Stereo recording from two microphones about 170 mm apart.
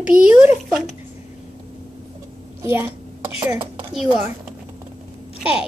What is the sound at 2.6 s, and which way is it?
Speech, 15° right (ahead or behind).